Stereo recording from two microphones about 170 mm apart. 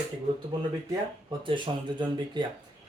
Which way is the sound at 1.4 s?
30° right (ahead or behind).